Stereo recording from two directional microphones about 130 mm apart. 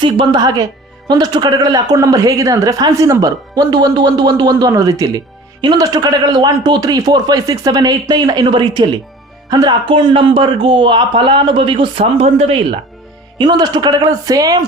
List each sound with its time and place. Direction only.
0.0 s a man's voice: 35° right (ahead or behind)
13.4 s a man's voice: 35° right (ahead or behind)